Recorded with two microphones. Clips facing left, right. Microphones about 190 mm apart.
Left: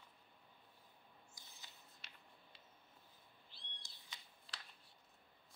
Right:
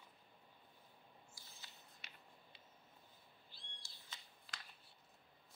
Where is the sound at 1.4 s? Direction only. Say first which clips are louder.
Even; 20° left (ahead or behind).